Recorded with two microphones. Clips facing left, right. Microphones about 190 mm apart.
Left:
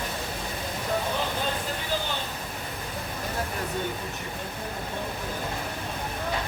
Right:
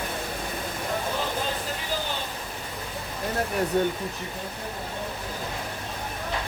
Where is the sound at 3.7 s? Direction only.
65° right (ahead or behind).